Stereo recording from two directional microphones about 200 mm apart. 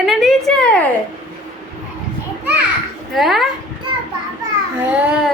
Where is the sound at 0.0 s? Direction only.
Centre (ahead or behind).